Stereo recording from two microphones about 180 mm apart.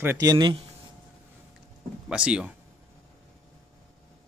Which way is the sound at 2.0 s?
5° right (ahead or behind).